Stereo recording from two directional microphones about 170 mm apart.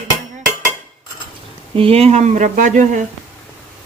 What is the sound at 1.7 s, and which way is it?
Speech, 35° right (ahead or behind).